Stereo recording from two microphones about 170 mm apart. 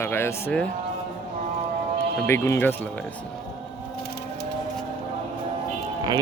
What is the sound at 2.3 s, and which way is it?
Speech, 15° left (ahead or behind).